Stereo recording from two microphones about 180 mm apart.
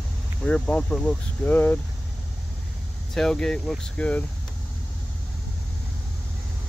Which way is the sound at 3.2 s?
5° left (ahead or behind).